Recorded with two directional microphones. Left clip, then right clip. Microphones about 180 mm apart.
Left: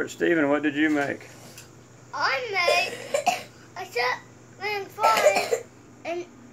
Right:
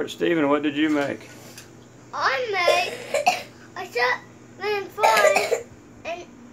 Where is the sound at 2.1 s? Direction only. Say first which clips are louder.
Right 2 dB; 15° right (ahead or behind).